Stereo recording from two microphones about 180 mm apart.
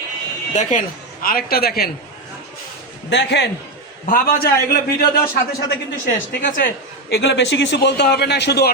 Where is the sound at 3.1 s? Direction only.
75° left (ahead or behind).